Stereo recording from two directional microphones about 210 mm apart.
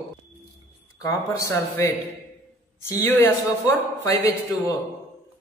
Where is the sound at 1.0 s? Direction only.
15° left (ahead or behind).